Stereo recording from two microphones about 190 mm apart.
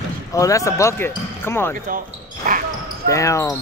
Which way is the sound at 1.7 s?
45° right (ahead or behind).